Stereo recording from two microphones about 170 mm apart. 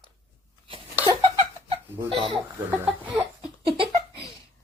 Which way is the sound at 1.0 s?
35° right (ahead or behind).